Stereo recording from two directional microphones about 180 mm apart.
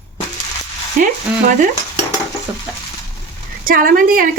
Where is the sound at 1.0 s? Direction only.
50° right (ahead or behind).